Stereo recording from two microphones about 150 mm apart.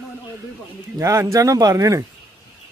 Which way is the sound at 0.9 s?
20° right (ahead or behind).